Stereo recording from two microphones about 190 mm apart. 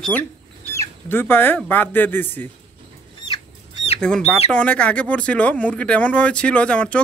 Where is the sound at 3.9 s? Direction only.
5° left (ahead or behind).